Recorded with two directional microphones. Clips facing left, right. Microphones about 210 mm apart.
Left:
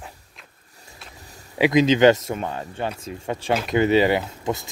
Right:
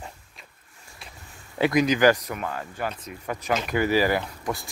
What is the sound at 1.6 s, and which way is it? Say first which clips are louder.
Speech: left 4 dB; 25° left (ahead or behind).